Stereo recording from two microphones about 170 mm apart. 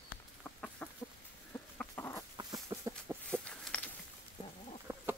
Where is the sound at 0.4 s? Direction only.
5° left (ahead or behind).